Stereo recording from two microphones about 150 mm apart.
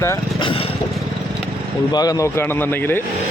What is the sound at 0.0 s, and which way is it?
Speech, 20° left (ahead or behind).